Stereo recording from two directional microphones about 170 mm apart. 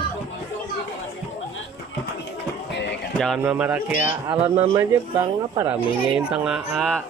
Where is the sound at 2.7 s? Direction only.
90° left.